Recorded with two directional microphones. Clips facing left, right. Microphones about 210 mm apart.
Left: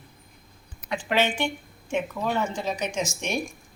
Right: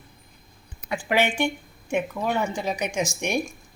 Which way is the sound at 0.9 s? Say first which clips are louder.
Right 1 dB; 10° right (ahead or behind).